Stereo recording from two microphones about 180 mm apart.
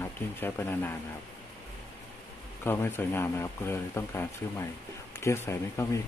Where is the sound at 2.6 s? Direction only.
15° left (ahead or behind).